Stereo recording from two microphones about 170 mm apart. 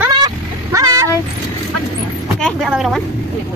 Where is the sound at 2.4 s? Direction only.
5° left (ahead or behind).